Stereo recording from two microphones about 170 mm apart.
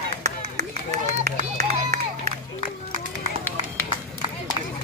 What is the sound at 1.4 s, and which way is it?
Run, 45° right (ahead or behind).